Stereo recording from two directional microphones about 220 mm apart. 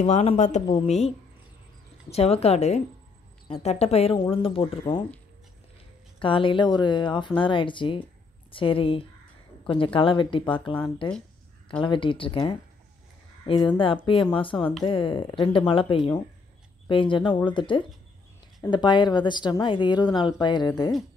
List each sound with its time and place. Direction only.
0.0 s a woman's voice: 30° left (ahead or behind)
2.0 s a woman's voice: 30° left (ahead or behind)
6.1 s a woman's voice: 25° left (ahead or behind)